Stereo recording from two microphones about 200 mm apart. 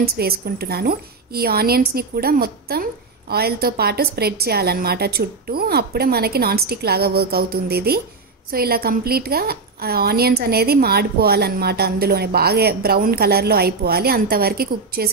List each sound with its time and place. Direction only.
0.0 s a woman's voice: 50° right (ahead or behind)